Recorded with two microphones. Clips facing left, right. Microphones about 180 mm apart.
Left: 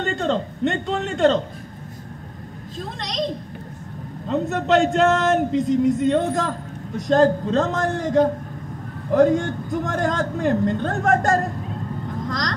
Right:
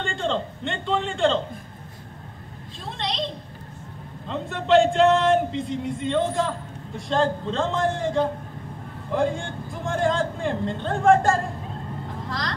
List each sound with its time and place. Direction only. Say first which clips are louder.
0.0 s a man's voice: left 4 dB; 45° left (ahead or behind)
2.8 s a woman's voice: left 2 dB; 45° left (ahead or behind)
4.3 s speech: left 1 dB; 45° left (ahead or behind)
12.3 s vehicle: left 3 dB; 45° left (ahead or behind)